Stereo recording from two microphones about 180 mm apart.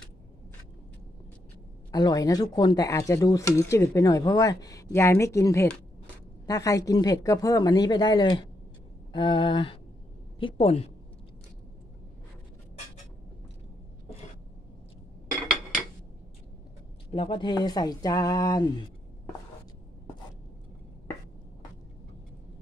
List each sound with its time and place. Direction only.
1.9 s a woman's voice: 20° left (ahead or behind)
17.1 s speech: 25° left (ahead or behind)